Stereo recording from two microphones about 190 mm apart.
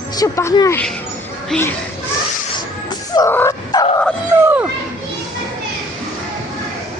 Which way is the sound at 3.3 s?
15° left (ahead or behind).